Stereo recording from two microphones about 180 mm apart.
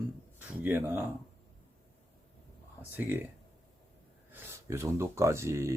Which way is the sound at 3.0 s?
10° right (ahead or behind).